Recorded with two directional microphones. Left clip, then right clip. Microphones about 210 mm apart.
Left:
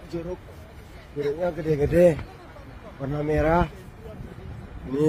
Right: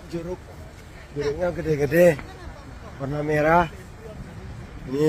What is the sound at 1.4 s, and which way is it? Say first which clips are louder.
Speech: right 1 dB; 5° right (ahead or behind).